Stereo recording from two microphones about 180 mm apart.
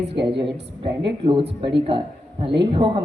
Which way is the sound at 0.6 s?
70° right (ahead or behind).